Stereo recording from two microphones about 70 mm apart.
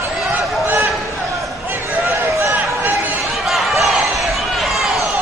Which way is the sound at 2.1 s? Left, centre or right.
Right.